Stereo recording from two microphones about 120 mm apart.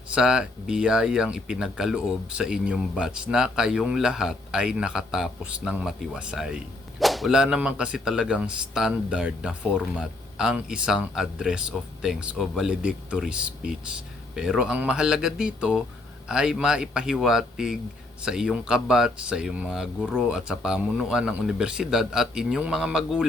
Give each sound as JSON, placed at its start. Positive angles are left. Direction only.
{"t": 0.1, "sound": "a man's voice", "side_deg": -5}